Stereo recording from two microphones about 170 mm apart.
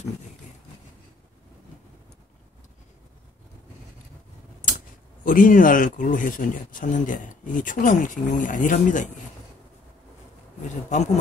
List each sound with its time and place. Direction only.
4.6 s speech: 50° left (ahead or behind)